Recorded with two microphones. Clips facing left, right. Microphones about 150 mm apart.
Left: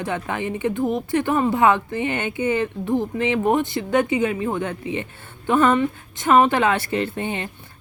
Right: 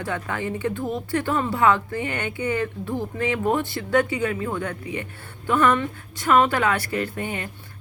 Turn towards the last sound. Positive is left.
turn(degrees=25)  # may be behind; listen again after turning